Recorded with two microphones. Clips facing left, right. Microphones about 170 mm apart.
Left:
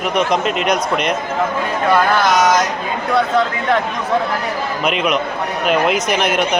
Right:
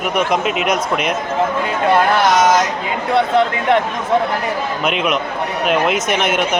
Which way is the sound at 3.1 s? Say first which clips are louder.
Right 2 dB; 25° right (ahead or behind).